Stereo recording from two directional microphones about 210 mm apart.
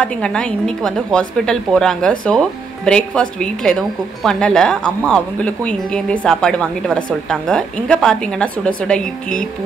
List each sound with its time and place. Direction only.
0.0 s speech: 5° left (ahead or behind)